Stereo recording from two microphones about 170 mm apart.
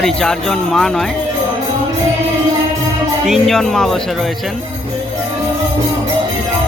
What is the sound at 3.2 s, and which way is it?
Speech, centre (ahead or behind).